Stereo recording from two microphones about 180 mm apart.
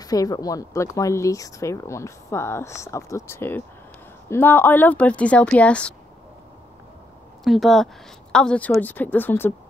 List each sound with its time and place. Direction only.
0.0 s speech: 20° left (ahead or behind)
7.4 s speech: centre (ahead or behind)